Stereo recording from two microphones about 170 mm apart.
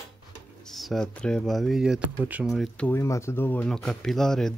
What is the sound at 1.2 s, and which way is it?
Speech, 5° left (ahead or behind).